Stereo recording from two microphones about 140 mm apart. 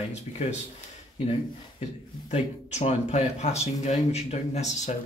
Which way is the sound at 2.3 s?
55° left (ahead or behind).